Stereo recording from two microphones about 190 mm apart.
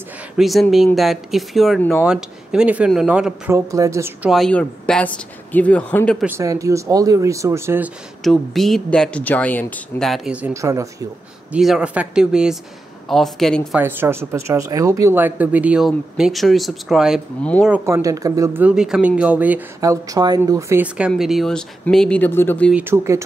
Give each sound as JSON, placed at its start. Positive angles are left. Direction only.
{"t": 0.4, "sound": "speech", "side_deg": 0}
{"t": 3.5, "sound": "speech", "side_deg": -15}
{"t": 4.3, "sound": "speech", "side_deg": 5}
{"t": 6.2, "sound": "speech", "side_deg": -15}
{"t": 8.2, "sound": "speech", "side_deg": 0}
{"t": 11.5, "sound": "speech", "side_deg": -5}
{"t": 13.7, "sound": "speech", "side_deg": -10}
{"t": 19.8, "sound": "speech", "side_deg": -20}
{"t": 22.7, "sound": "speech", "side_deg": -10}